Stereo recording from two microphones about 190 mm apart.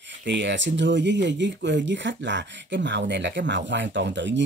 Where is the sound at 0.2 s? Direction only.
70° right (ahead or behind).